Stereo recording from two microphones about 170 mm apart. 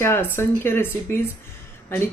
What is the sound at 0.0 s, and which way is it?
Speech, 15° left (ahead or behind).